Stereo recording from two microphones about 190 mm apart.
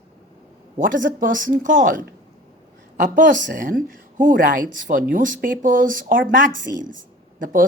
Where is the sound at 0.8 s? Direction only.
45° right (ahead or behind).